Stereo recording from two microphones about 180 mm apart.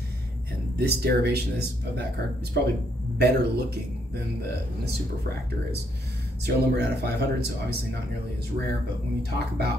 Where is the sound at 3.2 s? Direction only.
65° right (ahead or behind).